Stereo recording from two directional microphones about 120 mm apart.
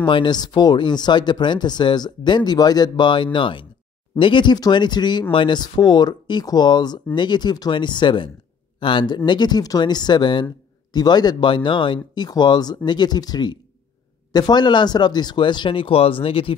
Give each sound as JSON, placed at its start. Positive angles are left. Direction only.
{"t": 0.0, "sound": "speech", "side_deg": 40}